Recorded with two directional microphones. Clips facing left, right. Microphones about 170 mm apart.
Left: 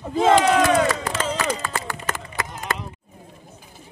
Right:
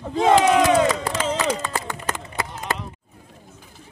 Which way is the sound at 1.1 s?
15° right (ahead or behind).